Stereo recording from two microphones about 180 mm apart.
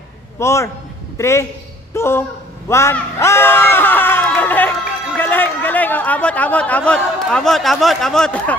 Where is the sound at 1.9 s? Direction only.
15° left (ahead or behind).